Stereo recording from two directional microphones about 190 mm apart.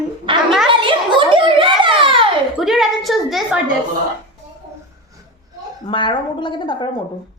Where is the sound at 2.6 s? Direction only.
Centre (ahead or behind).